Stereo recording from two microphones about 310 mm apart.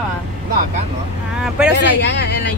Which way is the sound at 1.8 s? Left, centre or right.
Left.